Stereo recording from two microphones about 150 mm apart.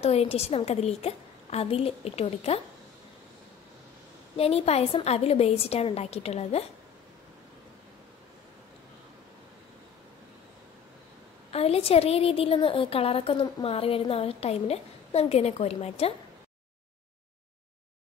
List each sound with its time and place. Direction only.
0.0 s a woman's voice: 45° left (ahead or behind)
4.4 s a woman's voice: 40° left (ahead or behind)
11.5 s a woman's voice: 40° left (ahead or behind)